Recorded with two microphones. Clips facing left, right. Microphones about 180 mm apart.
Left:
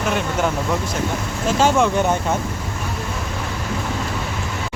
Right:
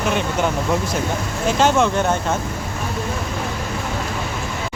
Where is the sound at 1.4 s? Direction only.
10° left (ahead or behind).